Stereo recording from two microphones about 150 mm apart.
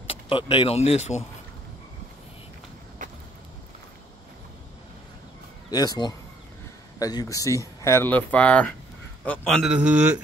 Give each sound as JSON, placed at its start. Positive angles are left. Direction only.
{"t": 0.0, "sound": "vehicle", "side_deg": 35}
{"t": 0.7, "sound": "speech", "side_deg": 45}
{"t": 5.7, "sound": "a man's voice", "side_deg": 25}
{"t": 9.7, "sound": "speech", "side_deg": -10}